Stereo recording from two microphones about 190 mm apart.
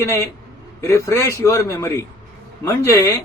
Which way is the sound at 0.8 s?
15° left (ahead or behind).